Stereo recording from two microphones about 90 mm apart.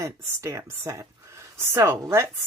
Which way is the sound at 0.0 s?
30° right (ahead or behind).